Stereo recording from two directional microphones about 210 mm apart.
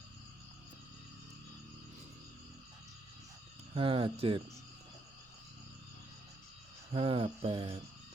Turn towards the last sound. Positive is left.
turn(degrees=-25)  # may be behind; listen again after turning